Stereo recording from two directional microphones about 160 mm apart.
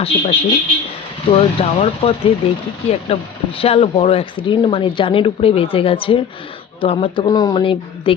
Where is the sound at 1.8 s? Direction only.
35° left (ahead or behind).